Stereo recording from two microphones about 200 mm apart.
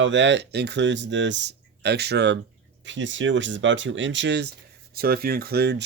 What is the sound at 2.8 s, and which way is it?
Speech, 70° right (ahead or behind).